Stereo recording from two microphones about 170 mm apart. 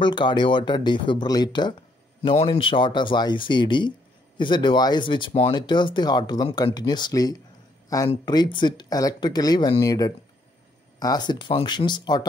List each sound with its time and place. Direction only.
0.0 s speech: 25° left (ahead or behind)